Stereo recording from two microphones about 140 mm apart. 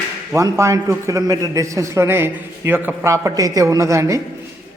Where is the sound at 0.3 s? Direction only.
20° right (ahead or behind).